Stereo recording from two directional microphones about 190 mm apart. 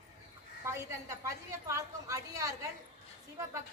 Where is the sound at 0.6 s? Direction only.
15° right (ahead or behind).